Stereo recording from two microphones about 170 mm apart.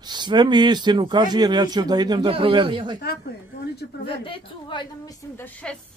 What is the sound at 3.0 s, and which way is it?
A woman's voice, 70° left (ahead or behind).